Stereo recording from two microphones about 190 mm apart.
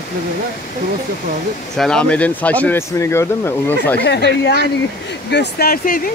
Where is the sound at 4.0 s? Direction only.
65° left (ahead or behind).